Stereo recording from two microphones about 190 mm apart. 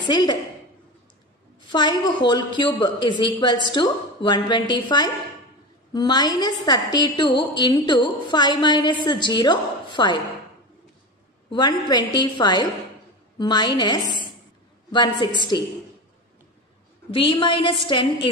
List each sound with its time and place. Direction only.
0.0 s a woman's voice: 20° left (ahead or behind)
1.7 s a woman's voice: 25° left (ahead or behind)
11.5 s a woman's voice: 20° left (ahead or behind)
17.1 s a woman's voice: 25° left (ahead or behind)